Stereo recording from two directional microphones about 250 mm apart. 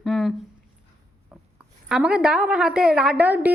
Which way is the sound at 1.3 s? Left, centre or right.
Centre.